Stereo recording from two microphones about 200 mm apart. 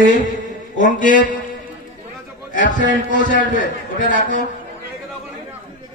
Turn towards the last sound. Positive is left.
turn(degrees=40)  # may be behind; listen again after turning